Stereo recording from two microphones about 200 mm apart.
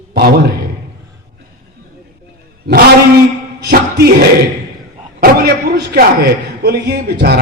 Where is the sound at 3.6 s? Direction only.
50° right (ahead or behind).